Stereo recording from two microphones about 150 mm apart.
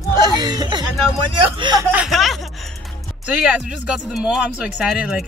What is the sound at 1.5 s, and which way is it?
Speech, 30° right (ahead or behind).